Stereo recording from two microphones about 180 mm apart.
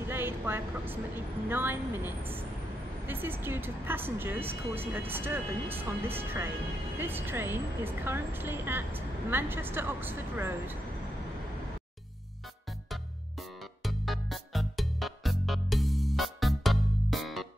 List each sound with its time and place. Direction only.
0.0 s speech: 10° right (ahead or behind)
12.9 s music: centre (ahead or behind)